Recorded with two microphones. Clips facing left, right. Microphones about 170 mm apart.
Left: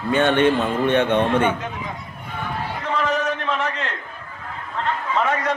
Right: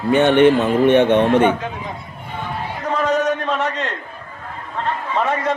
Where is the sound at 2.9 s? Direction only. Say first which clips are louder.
Right 5 dB; 40° right (ahead or behind).